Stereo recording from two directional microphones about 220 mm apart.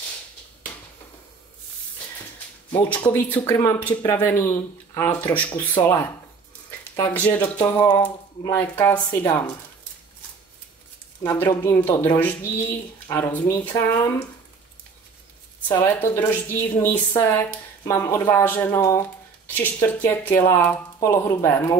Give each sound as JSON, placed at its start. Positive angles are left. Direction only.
{"t": 2.7, "sound": "a woman's voice", "side_deg": 20}
{"t": 11.2, "sound": "a woman's voice", "side_deg": 15}
{"t": 15.7, "sound": "a woman's voice", "side_deg": 10}